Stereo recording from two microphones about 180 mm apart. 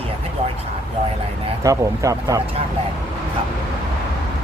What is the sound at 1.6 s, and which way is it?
Speech, 20° right (ahead or behind).